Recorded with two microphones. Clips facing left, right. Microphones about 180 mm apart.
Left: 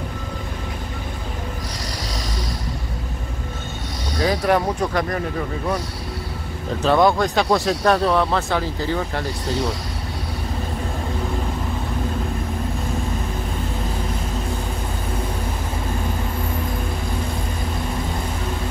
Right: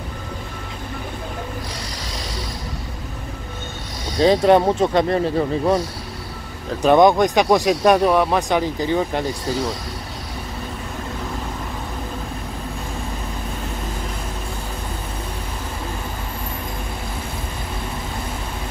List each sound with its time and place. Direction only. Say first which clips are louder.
4.2 s speech: right 5 dB; 25° right (ahead or behind)
6.8 s speech: right 4 dB; 20° right (ahead or behind)